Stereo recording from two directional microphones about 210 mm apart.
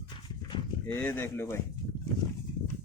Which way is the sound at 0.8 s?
10° left (ahead or behind).